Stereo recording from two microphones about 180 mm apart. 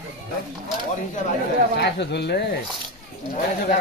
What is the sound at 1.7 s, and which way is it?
Speech, 70° left (ahead or behind).